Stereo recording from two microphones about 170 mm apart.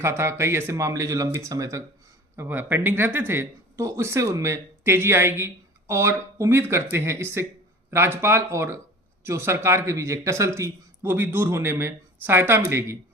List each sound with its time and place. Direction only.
0.0 s speech: 15° right (ahead or behind)